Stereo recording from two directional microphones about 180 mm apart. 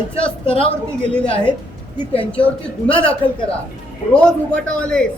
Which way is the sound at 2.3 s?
5° left (ahead or behind).